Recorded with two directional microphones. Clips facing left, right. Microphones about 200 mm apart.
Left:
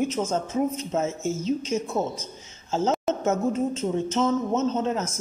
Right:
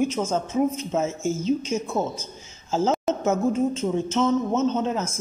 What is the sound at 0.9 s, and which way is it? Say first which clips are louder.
Speech: right 1 dB; centre (ahead or behind).